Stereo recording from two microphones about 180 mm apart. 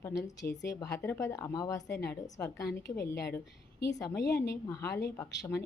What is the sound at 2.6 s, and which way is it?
A woman's voice, 65° left (ahead or behind).